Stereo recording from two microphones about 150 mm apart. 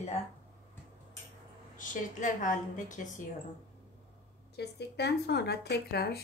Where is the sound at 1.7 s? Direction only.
60° left (ahead or behind).